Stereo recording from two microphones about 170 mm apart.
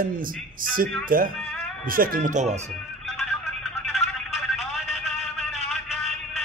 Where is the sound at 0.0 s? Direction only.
55° right (ahead or behind).